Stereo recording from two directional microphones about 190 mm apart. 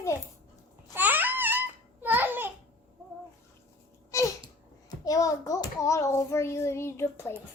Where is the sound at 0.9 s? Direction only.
10° right (ahead or behind).